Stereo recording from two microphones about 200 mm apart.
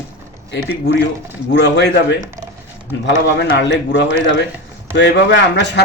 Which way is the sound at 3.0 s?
60° left (ahead or behind).